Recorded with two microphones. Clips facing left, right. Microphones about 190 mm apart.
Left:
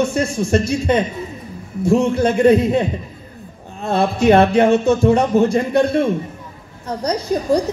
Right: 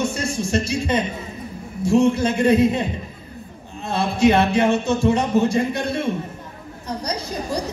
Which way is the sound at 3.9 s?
55° left (ahead or behind).